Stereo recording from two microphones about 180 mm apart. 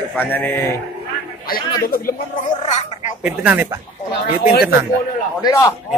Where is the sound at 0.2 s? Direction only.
10° left (ahead or behind).